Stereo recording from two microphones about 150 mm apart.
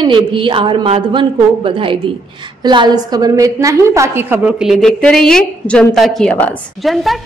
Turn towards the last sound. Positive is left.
turn(degrees=0)  # may be behind; listen again after turning